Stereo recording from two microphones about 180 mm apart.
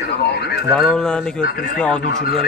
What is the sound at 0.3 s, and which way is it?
Radio, 65° left (ahead or behind).